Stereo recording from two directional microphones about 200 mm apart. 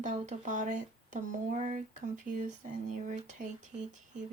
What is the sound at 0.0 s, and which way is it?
Speech, 40° right (ahead or behind).